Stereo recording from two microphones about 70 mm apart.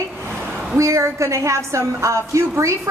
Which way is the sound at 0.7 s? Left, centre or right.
Right.